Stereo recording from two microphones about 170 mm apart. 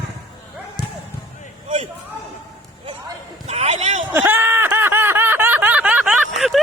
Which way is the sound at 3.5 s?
40° right (ahead or behind).